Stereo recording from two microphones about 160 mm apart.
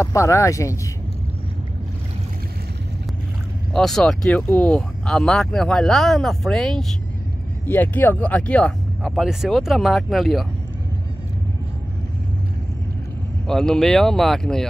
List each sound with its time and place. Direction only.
0.0 s speech: 20° left (ahead or behind)
3.7 s speech: 5° left (ahead or behind)
13.5 s speech: 5° left (ahead or behind)